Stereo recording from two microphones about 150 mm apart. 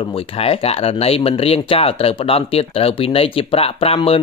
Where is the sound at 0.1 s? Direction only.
40° left (ahead or behind).